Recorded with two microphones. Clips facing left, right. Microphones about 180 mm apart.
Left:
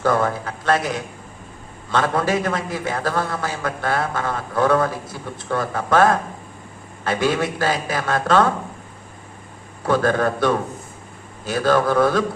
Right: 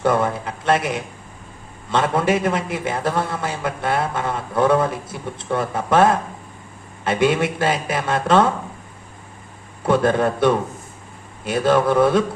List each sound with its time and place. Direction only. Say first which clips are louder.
0.0 s a man's voice: right 1 dB; 25° right (ahead or behind)
9.8 s a man's voice: right 1 dB; 25° right (ahead or behind)